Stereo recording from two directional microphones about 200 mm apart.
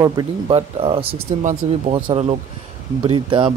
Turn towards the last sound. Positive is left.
turn(degrees=-25)  # may be behind; listen again after turning